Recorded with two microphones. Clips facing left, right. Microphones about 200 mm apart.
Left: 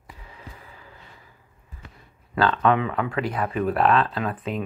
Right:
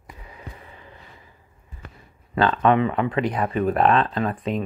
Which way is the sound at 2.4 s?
Centre (ahead or behind).